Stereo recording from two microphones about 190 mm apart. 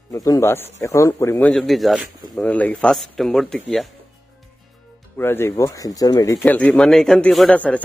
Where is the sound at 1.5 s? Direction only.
Centre (ahead or behind).